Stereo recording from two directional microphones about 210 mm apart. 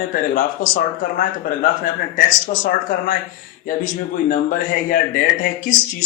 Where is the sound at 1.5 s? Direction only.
40° left (ahead or behind).